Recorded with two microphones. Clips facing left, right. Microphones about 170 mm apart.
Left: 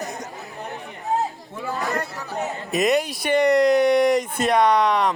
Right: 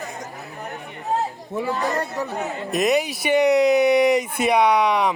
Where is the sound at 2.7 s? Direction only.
Centre (ahead or behind).